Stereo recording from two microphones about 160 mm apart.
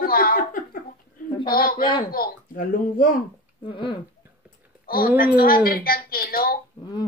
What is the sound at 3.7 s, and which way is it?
Speech, 30° left (ahead or behind).